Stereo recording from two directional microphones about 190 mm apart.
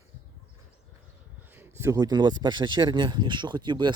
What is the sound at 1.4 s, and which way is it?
Speech, 10° right (ahead or behind).